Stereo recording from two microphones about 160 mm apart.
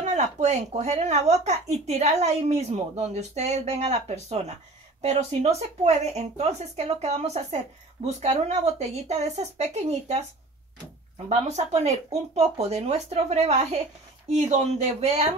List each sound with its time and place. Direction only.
0.0 s speech: 45° right (ahead or behind)
11.2 s speech: 45° right (ahead or behind)